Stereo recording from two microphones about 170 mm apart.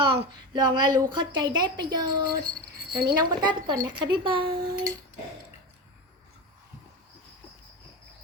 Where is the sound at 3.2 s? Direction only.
25° right (ahead or behind).